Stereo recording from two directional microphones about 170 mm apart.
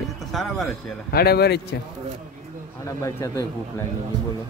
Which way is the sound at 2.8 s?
15° left (ahead or behind).